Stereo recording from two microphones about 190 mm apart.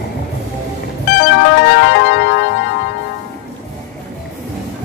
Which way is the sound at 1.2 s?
60° left (ahead or behind).